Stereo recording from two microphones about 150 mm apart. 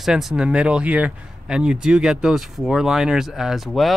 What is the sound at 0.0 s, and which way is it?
Speech, centre (ahead or behind).